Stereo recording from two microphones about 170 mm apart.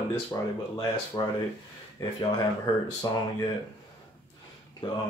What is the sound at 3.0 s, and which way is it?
Speech, 20° left (ahead or behind).